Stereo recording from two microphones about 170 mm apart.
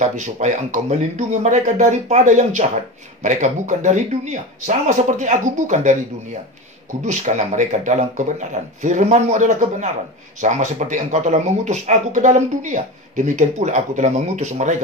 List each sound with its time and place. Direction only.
0.0 s speech: 45° right (ahead or behind)
7.1 s speech: 45° right (ahead or behind)